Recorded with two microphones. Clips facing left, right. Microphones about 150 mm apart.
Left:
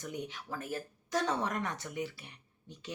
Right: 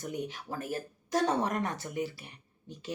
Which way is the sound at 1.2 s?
35° right (ahead or behind).